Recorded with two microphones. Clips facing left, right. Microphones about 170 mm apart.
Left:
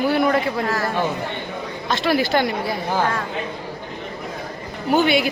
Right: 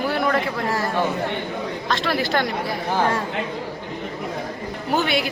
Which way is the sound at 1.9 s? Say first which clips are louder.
Left 4 dB; centre (ahead or behind).